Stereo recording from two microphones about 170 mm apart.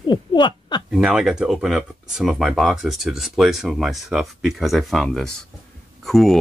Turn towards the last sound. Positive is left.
turn(degrees=0)  # may be behind; listen again after turning